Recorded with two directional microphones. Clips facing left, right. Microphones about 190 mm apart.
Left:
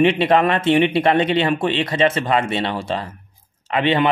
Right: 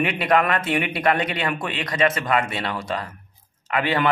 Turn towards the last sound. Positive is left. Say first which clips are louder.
# left 4 dB
turn(degrees=25)  # may be behind; listen again after turning